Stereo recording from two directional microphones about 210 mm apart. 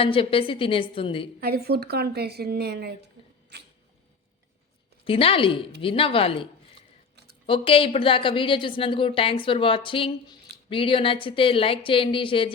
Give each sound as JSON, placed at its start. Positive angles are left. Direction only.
{"t": 0.0, "sound": "a woman's voice", "side_deg": 25}
{"t": 1.4, "sound": "a woman's voice", "side_deg": -45}
{"t": 5.0, "sound": "a woman's voice", "side_deg": 25}